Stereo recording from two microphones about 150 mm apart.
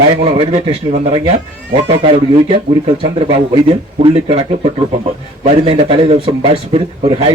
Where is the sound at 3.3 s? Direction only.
45° right (ahead or behind).